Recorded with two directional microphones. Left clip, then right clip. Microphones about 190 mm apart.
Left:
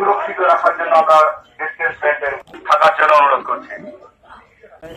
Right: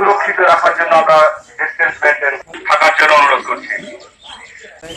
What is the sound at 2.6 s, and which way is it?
Speech, 30° right (ahead or behind).